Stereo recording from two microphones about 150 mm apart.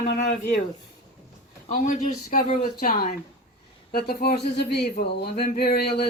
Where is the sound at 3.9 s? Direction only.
90° left.